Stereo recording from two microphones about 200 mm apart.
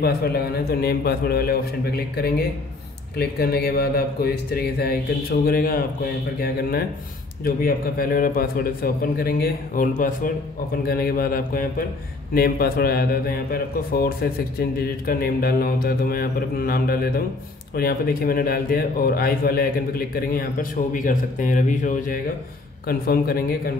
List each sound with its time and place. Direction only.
0.0 s a man's voice: 50° left (ahead or behind)
7.4 s a man's voice: 45° left (ahead or behind)